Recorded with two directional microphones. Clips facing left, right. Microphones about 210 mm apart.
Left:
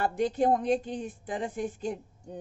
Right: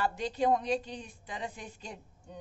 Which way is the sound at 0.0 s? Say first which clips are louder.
Left 4 dB; 50° left (ahead or behind).